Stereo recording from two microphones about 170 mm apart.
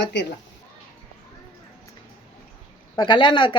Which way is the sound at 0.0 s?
90° left.